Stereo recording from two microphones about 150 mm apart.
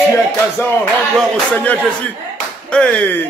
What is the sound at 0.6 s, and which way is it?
Music, 15° left (ahead or behind).